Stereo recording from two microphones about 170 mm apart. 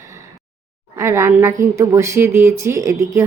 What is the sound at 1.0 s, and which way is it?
Speech, 15° right (ahead or behind).